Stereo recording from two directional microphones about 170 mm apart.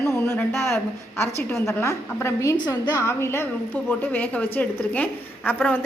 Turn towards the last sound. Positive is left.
turn(degrees=10)  # may be behind; listen again after turning